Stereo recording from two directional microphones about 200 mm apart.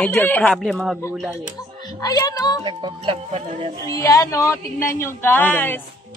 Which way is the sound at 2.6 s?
25° right (ahead or behind).